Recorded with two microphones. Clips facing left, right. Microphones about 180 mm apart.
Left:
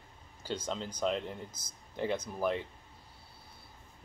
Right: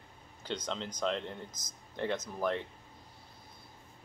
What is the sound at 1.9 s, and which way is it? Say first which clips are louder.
Speech: left 1 dB; 10° left (ahead or behind).